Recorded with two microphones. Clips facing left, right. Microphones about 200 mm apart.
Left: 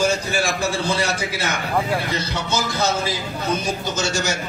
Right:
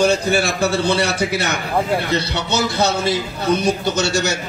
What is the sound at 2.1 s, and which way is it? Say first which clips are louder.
A man's voice: right 4 dB; 70° right (ahead or behind).